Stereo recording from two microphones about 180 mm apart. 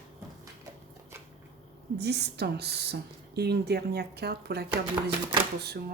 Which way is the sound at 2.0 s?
65° right (ahead or behind).